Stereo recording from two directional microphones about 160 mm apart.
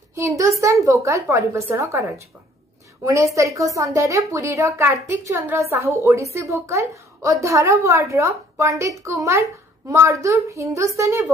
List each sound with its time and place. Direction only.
0.1 s a woman's voice: 20° right (ahead or behind)